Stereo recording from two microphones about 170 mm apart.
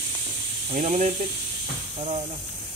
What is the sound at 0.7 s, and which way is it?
Speech, 45° right (ahead or behind).